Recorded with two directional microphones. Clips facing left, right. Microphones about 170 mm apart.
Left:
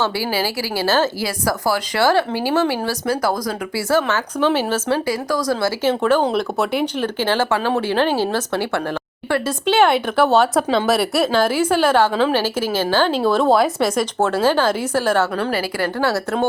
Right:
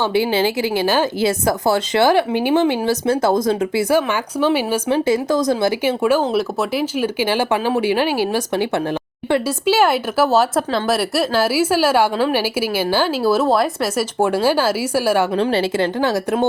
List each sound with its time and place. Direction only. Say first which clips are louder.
0.0 s speech: right 4 dB; 20° right (ahead or behind)
5.0 s speech: right 4 dB; 20° right (ahead or behind)
15.4 s speech: right 4 dB; 25° right (ahead or behind)